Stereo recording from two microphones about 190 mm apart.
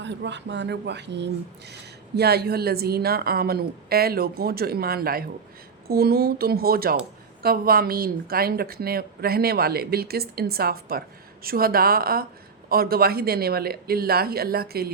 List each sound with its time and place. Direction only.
0.0 s speech: 65° right (ahead or behind)